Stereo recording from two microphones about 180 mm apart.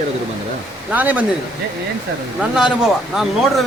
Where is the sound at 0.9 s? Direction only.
10° right (ahead or behind).